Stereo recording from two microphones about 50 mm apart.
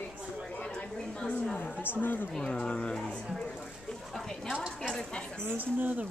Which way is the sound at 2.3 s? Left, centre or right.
Centre.